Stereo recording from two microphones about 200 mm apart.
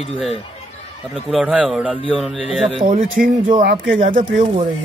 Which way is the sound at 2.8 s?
45° right (ahead or behind).